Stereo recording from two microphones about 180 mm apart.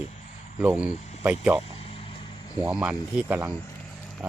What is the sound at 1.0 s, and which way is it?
Cricket, 35° left (ahead or behind).